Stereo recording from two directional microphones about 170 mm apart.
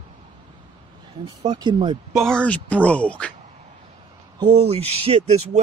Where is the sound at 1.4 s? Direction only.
25° right (ahead or behind).